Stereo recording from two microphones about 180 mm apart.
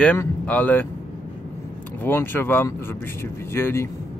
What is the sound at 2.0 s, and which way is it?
Speech, 10° left (ahead or behind).